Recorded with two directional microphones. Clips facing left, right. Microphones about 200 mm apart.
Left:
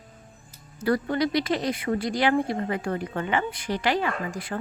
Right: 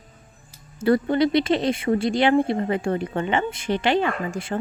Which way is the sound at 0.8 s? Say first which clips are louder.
Right 5 dB; 25° right (ahead or behind).